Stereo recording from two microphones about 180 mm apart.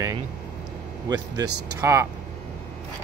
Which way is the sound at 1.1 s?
20° right (ahead or behind).